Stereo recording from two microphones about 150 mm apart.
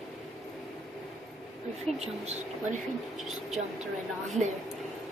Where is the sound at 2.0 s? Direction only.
45° right (ahead or behind).